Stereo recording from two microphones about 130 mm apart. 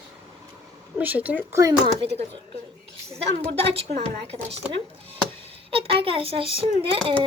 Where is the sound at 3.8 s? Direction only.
55° right (ahead or behind).